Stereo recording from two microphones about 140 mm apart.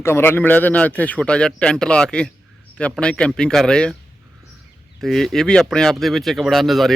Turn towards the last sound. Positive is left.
turn(degrees=0)  # may be behind; listen again after turning